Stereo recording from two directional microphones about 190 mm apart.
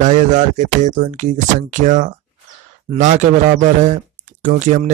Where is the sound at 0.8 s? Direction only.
40° right (ahead or behind).